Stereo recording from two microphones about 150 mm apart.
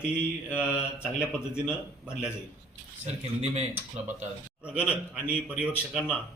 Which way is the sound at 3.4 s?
45° right (ahead or behind).